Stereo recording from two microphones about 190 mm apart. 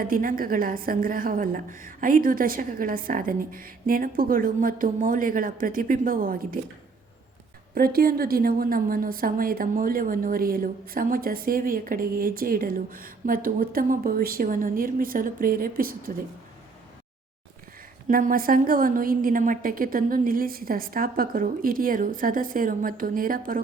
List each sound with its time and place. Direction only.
0.0 s a woman's voice: 45° right (ahead or behind)
7.8 s a woman's voice: 50° right (ahead or behind)
18.1 s a woman's voice: 45° right (ahead or behind)